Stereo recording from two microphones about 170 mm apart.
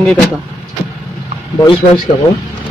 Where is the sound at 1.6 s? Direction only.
25° left (ahead or behind).